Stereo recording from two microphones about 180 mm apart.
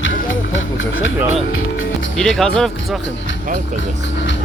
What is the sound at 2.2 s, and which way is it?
Speech, centre (ahead or behind).